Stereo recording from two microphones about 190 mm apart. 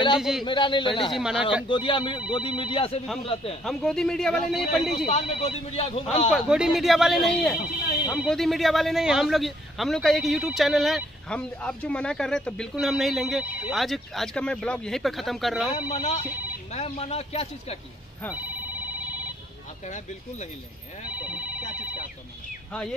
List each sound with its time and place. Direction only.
0.2 s a man's voice: centre (ahead or behind)
0.5 s a man's voice: 25° left (ahead or behind)
1.1 s a man's voice: centre (ahead or behind)
1.7 s a man's voice: 25° left (ahead or behind)
3.6 s a man's voice: 5° left (ahead or behind)
5.0 s speech: 35° left (ahead or behind)
6.3 s a man's voice: 5° right (ahead or behind)
15.9 s speech: 40° left (ahead or behind)
18.3 s telephone bell ringing: 10° right (ahead or behind)
21.1 s telephone: 10° right (ahead or behind)
22.7 s speech: 5° left (ahead or behind)